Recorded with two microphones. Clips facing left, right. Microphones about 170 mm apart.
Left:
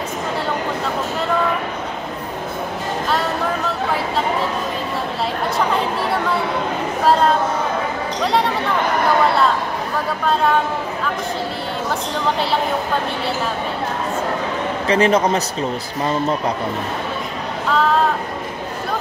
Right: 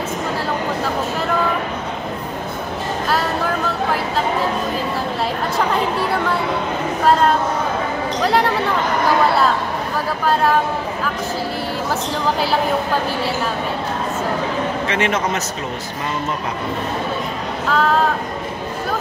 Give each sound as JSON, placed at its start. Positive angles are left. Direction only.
{"t": 8.2, "sound": "a sound", "side_deg": 0}
{"t": 14.9, "sound": "a man's voice", "side_deg": 35}
{"t": 17.6, "sound": "speech", "side_deg": 0}